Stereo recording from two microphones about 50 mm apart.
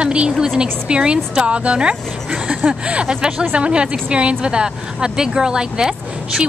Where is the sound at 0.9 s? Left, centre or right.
Centre.